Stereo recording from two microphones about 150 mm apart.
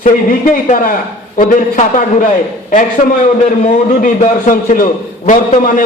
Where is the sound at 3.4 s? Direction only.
50° left (ahead or behind).